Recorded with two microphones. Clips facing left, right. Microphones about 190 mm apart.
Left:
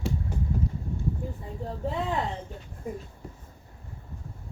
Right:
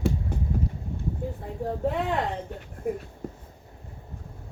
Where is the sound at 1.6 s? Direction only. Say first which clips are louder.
Right 4 dB; 65° right (ahead or behind).